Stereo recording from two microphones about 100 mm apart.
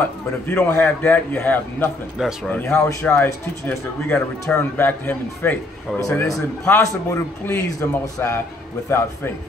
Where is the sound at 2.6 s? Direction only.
25° left (ahead or behind).